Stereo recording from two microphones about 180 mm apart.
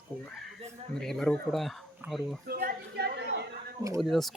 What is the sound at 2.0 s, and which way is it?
Speech, 10° right (ahead or behind).